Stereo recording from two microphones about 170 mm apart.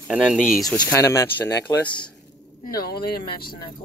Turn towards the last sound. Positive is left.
turn(degrees=65)  # may be behind; listen again after turning